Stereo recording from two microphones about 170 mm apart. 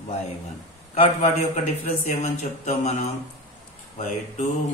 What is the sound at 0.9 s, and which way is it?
A man's voice, 40° left (ahead or behind).